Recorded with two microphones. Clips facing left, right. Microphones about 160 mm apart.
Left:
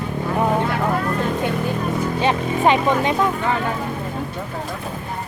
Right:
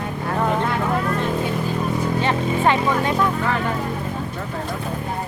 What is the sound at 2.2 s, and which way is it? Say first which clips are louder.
Speech: left 3 dB; 20° left (ahead or behind).